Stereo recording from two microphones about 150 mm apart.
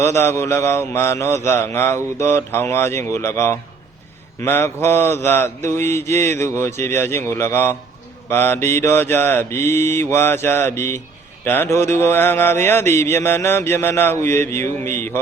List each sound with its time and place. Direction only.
0.0 s mantra: 15° left (ahead or behind)